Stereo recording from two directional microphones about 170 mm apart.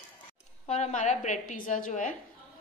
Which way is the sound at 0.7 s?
40° left (ahead or behind).